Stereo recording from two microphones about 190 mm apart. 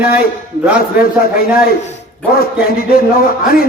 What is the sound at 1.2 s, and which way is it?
A man's voice, 55° left (ahead or behind).